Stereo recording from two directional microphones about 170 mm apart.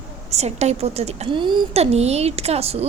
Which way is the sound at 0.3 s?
40° right (ahead or behind).